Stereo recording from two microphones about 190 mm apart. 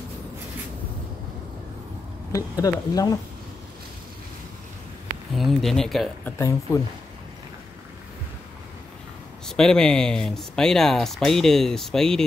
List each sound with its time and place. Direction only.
2.3 s speech: 20° left (ahead or behind)
5.3 s speech: centre (ahead or behind)
6.3 s speech: 15° left (ahead or behind)
9.5 s speech: 5° left (ahead or behind)